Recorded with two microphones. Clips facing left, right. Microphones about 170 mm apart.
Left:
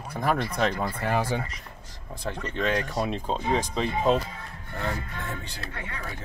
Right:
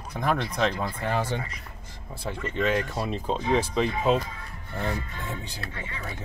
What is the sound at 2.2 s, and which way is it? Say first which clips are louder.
Speech: right 1 dB; 5° right (ahead or behind).